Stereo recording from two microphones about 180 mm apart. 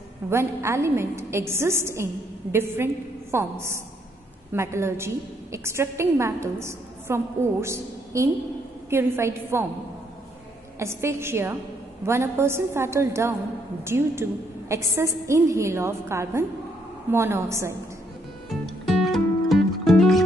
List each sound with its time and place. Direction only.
0.3 s a woman's voice: 15° right (ahead or behind)
10.8 s a woman's voice: 15° right (ahead or behind)
18.5 s music: centre (ahead or behind)